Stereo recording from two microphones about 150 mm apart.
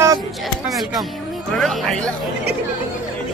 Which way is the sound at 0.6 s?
Centre (ahead or behind).